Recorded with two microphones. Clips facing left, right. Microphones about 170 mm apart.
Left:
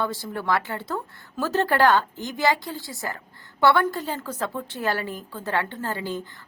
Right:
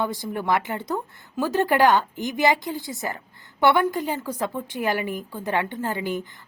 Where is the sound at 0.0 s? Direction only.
15° right (ahead or behind).